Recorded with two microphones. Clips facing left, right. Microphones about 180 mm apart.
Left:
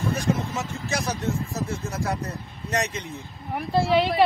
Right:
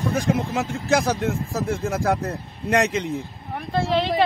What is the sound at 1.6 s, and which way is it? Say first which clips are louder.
Speech: right 5 dB; 55° right (ahead or behind).